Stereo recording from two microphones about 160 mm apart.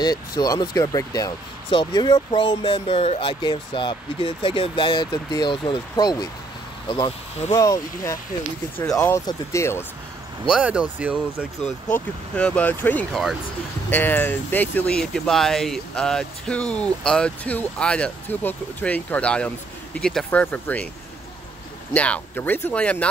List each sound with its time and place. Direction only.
0.0 s speech: 25° left (ahead or behind)
10.5 s speech: 5° right (ahead or behind)
11.9 s speech: 10° left (ahead or behind)
13.8 s speech: 10° left (ahead or behind)
21.9 s speech: 10° left (ahead or behind)